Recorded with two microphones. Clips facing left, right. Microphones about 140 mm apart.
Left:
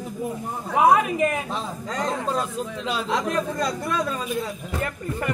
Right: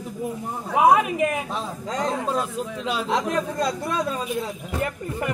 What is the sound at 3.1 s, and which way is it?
A woman's voice, 25° right (ahead or behind).